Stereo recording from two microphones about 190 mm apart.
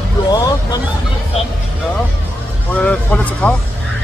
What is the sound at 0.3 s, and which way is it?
Vehicle, 20° left (ahead or behind).